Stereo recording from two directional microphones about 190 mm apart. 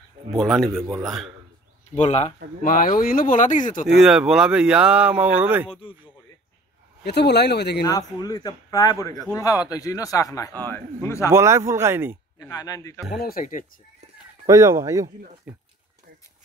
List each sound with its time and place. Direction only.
0.4 s speech: centre (ahead or behind)
0.7 s speech: 15° right (ahead or behind)
1.0 s speech: centre (ahead or behind)
2.0 s speech: 35° left (ahead or behind)
2.6 s speech: 45° left (ahead or behind)
3.8 s speech: centre (ahead or behind)
5.7 s a man's voice: 30° left (ahead or behind)
7.1 s speech: 60° left (ahead or behind)
8.2 s a man's voice: 20° left (ahead or behind)
11.3 s speech: 15° right (ahead or behind)
12.4 s a man's voice: 20° left (ahead or behind)
13.1 s speech: 55° left (ahead or behind)
14.4 s speech: 15° right (ahead or behind)